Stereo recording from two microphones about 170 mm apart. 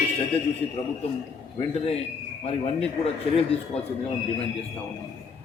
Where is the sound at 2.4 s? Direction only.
35° left (ahead or behind).